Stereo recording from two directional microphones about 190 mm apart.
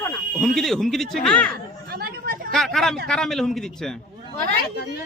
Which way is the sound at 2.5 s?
Centre (ahead or behind).